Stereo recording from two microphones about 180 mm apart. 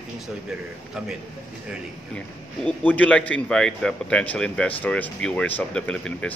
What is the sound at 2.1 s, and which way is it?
A man's voice, 5° left (ahead or behind).